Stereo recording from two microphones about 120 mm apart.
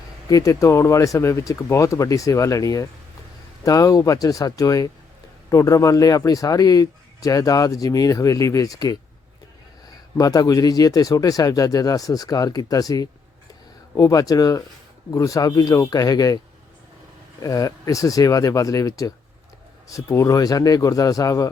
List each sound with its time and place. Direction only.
0.3 s speech: 30° left (ahead or behind)
10.2 s speech: 30° left (ahead or behind)
17.4 s speech: 30° left (ahead or behind)